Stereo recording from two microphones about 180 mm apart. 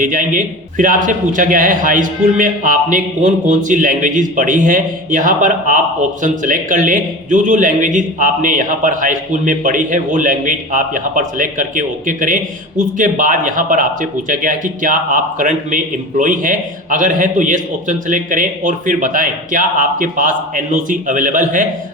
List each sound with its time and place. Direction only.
0.0 s a man's voice: 45° right (ahead or behind)